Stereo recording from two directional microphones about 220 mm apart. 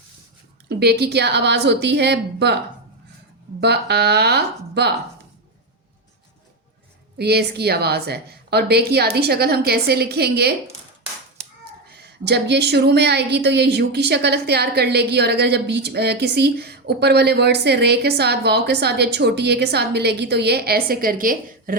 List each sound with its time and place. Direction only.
0.7 s a woman's voice: 50° right (ahead or behind)
3.6 s a woman's voice: 50° right (ahead or behind)
7.2 s a woman's voice: 45° right (ahead or behind)
11.9 s a woman's voice: 50° right (ahead or behind)